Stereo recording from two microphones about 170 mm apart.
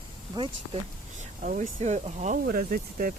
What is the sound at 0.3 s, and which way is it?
Speech, 30° right (ahead or behind).